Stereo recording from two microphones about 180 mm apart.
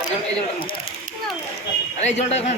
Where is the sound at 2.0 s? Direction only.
35° left (ahead or behind).